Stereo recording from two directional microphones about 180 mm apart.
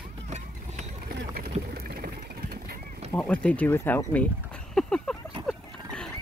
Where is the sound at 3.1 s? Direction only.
5° left (ahead or behind).